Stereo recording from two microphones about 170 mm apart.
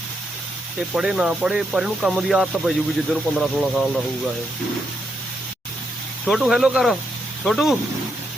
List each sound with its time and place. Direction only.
0.9 s speech: 5° right (ahead or behind)
6.2 s speech: centre (ahead or behind)